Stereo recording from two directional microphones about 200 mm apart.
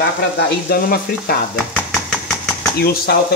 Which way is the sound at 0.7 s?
50° left (ahead or behind).